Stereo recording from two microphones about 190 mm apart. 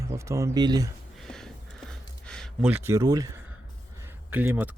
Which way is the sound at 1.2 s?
5° left (ahead or behind).